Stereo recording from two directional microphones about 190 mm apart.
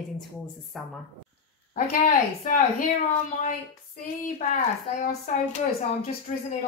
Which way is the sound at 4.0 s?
40° left (ahead or behind).